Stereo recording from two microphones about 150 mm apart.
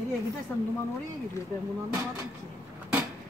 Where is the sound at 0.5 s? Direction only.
20° left (ahead or behind).